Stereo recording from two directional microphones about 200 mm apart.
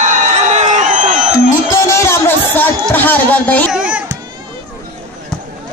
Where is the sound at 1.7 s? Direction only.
15° left (ahead or behind).